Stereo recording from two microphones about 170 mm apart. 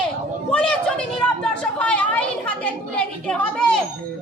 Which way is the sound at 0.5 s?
5° left (ahead or behind).